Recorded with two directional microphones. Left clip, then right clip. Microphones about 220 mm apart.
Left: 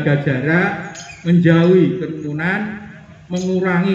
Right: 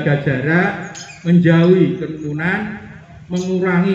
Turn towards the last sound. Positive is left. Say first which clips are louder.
# right 1 dB
turn(degrees=30)  # may be behind; listen again after turning